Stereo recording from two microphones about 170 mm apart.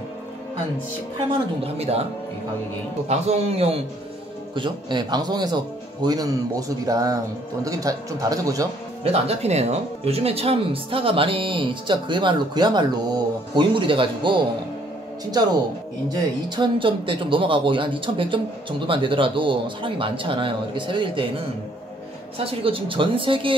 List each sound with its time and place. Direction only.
1.6 s speech: 35° right (ahead or behind)
3.1 s speech: 40° right (ahead or behind); by 8.6 s 20° right (ahead or behind)
9.0 s speech: 40° right (ahead or behind)
16.1 s speech: 25° right (ahead or behind)
22.4 s speech: 35° right (ahead or behind)